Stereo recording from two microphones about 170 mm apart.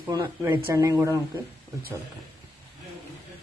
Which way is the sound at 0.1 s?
25° right (ahead or behind).